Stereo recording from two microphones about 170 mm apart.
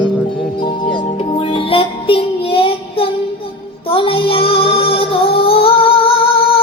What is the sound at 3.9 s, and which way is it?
Female singing, 30° left (ahead or behind).